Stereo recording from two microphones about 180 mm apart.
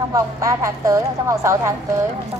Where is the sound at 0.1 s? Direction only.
20° right (ahead or behind).